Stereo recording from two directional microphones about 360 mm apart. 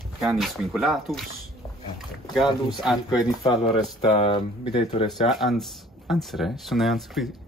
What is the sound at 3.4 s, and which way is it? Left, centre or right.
Speech, centre.